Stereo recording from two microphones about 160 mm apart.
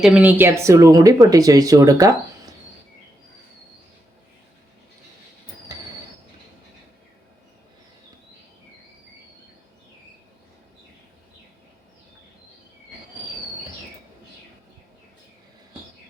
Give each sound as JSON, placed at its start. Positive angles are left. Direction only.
{"t": 0.0, "sound": "speech", "side_deg": -10}
{"t": 5.7, "sound": "train", "side_deg": -25}